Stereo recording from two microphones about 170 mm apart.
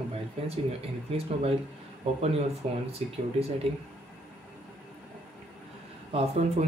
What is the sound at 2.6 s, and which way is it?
Speech, 35° right (ahead or behind).